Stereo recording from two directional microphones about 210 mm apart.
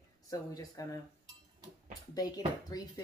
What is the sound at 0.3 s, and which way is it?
Speech, 15° left (ahead or behind).